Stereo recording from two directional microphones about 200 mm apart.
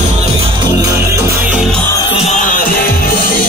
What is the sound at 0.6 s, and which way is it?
Music, 15° right (ahead or behind).